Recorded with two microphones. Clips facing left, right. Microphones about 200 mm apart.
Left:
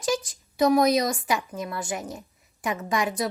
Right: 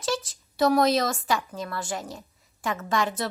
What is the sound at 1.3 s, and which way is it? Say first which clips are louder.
A woman's voice: even; 15° left (ahead or behind).